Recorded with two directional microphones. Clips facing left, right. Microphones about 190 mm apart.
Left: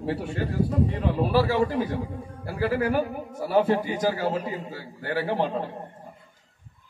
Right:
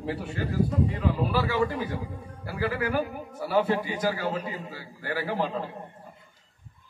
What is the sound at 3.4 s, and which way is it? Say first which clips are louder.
A man's voice: left 3 dB; 30° left (ahead or behind).